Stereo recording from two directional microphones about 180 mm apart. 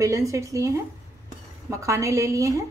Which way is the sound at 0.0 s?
15° right (ahead or behind).